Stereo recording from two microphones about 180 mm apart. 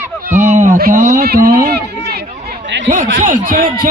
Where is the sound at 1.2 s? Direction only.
55° right (ahead or behind).